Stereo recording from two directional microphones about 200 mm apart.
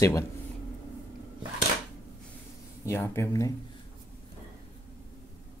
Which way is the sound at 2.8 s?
10° left (ahead or behind).